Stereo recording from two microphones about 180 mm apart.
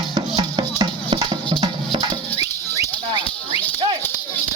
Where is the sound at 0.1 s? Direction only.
25° right (ahead or behind).